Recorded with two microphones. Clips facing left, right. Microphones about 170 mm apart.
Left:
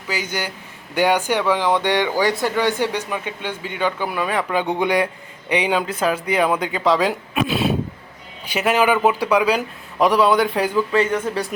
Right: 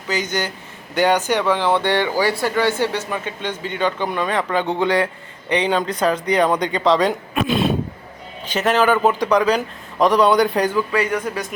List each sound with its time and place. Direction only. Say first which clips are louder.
0.1 s speech: right 3 dB; 10° left (ahead or behind)
10.9 s speech: left 2 dB; 25° left (ahead or behind)